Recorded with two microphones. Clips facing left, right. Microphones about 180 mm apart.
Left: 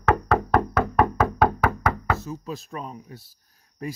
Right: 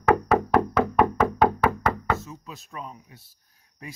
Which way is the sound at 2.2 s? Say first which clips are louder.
Left 8 dB; 35° left (ahead or behind).